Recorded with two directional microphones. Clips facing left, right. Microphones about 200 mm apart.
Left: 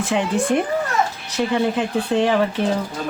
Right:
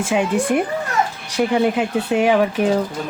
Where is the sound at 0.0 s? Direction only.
10° right (ahead or behind).